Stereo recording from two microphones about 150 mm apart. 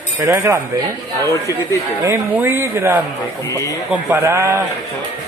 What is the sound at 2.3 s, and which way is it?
Speech, 15° right (ahead or behind).